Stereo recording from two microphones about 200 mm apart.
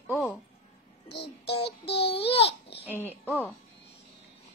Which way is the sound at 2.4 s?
55° left (ahead or behind).